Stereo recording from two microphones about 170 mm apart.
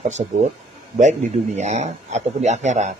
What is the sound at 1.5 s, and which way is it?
A man's voice, 40° right (ahead or behind).